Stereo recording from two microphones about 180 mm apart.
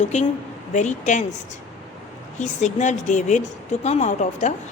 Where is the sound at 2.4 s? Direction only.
40° left (ahead or behind).